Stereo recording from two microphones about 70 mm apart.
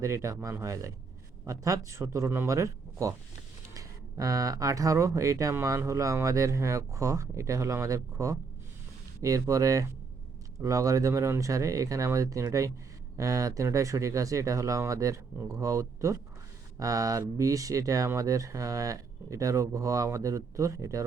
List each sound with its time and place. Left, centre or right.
0.0 s speech: right